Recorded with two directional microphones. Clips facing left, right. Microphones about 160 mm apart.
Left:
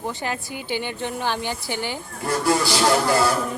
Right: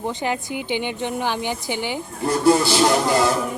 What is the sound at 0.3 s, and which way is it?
Speech, 20° right (ahead or behind).